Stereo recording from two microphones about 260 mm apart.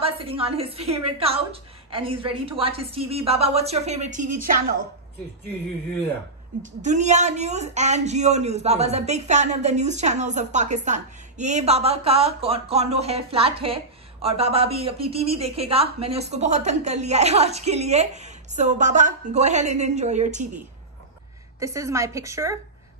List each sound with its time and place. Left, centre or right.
0.0 s speech: right
6.6 s speech: right
21.5 s a woman's voice: centre